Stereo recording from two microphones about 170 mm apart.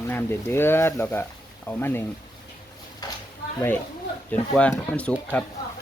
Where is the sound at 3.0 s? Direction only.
25° left (ahead or behind).